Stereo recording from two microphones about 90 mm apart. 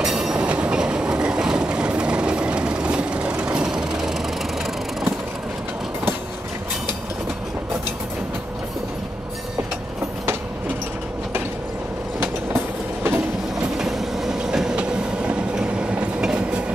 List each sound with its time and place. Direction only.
0.0 s train: 5° right (ahead or behind)
12.2 s train: 20° right (ahead or behind)
13.7 s train: 5° right (ahead or behind)